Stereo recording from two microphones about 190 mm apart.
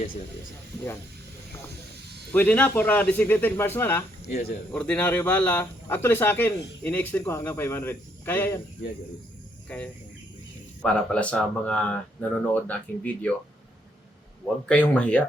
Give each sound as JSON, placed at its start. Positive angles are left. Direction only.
{"t": 2.3, "sound": "speech", "side_deg": 10}
{"t": 4.3, "sound": "speech", "side_deg": 50}
{"t": 4.7, "sound": "speech", "side_deg": 5}
{"t": 9.6, "sound": "speech", "side_deg": 5}
{"t": 14.7, "sound": "speech", "side_deg": 5}